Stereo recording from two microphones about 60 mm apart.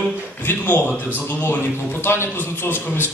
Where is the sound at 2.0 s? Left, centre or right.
Left.